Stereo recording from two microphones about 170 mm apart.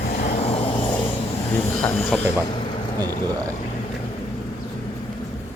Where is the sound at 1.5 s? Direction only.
15° left (ahead or behind).